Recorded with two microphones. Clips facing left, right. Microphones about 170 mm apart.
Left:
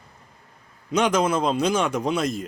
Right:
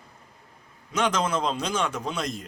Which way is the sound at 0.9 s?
15° left (ahead or behind).